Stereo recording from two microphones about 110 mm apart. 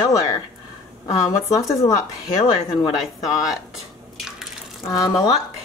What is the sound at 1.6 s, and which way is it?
Speech, 30° left (ahead or behind).